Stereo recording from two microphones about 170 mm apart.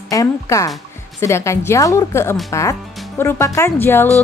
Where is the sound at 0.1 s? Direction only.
20° left (ahead or behind).